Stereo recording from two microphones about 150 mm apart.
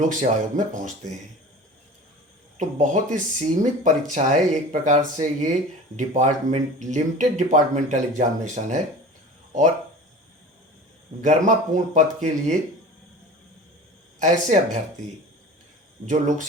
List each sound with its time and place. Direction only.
0.0 s speech: 55° right (ahead or behind)
2.6 s speech: 55° right (ahead or behind)
11.2 s speech: 55° right (ahead or behind)
14.2 s speech: 55° right (ahead or behind)
16.0 s speech: 55° right (ahead or behind)